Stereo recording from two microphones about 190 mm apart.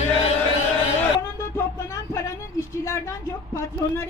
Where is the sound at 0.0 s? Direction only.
35° left (ahead or behind).